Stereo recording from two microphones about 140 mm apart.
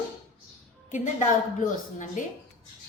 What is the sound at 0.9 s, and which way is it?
Speech, 60° left (ahead or behind).